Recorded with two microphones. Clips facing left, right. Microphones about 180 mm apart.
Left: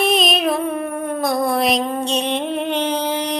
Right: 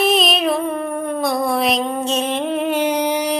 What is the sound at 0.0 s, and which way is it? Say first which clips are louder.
Music: right 1 dB; centre (ahead or behind).